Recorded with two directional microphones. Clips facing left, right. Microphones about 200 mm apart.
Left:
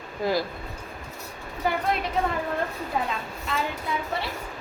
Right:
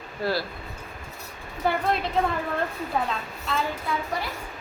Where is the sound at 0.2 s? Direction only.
15° left (ahead or behind).